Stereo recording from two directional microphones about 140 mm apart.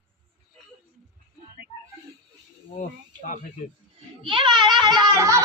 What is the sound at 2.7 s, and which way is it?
Speech, 65° left (ahead or behind).